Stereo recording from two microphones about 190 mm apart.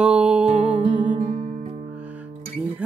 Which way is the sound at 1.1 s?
30° right (ahead or behind).